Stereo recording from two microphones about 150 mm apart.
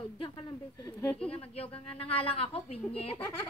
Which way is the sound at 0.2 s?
30° left (ahead or behind).